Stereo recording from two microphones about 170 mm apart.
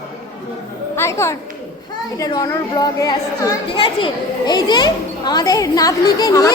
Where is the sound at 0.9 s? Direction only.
15° left (ahead or behind).